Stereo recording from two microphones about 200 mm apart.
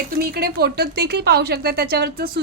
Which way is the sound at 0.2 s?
50° right (ahead or behind).